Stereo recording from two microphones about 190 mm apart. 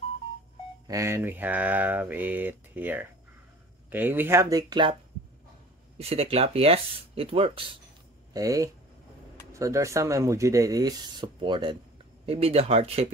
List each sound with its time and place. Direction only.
0.8 s speech: 15° right (ahead or behind)
5.9 s speech: 30° right (ahead or behind)
8.3 s speech: 20° right (ahead or behind)